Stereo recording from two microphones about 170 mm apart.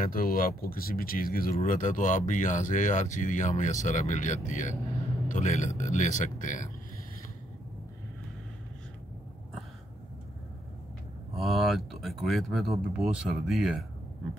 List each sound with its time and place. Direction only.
0.0 s speech: 55° left (ahead or behind)
11.3 s speech: centre (ahead or behind)